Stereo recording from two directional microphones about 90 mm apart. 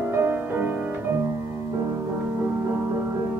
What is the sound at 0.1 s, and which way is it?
Music, 25° right (ahead or behind).